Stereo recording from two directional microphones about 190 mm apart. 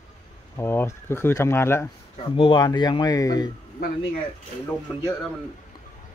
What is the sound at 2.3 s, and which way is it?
Speech, 25° left (ahead or behind).